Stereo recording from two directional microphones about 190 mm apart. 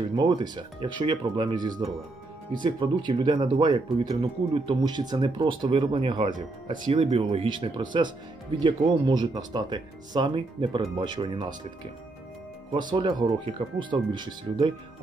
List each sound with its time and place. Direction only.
0.1 s speech: 25° right (ahead or behind)
12.7 s speech: 25° right (ahead or behind)